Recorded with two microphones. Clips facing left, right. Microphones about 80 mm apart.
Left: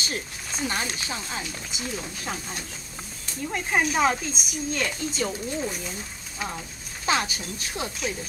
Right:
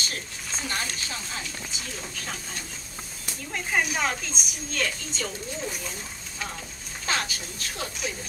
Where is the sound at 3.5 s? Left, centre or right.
Centre.